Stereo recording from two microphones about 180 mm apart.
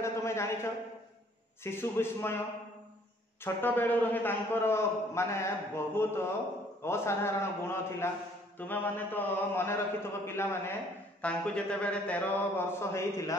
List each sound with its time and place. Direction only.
0.0 s a sound: 15° left (ahead or behind)
1.6 s a man's voice: 15° left (ahead or behind)
3.4 s a man's voice: 10° left (ahead or behind)